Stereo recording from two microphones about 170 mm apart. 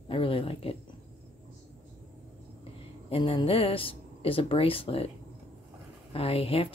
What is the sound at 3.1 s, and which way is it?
Speech, 30° left (ahead or behind).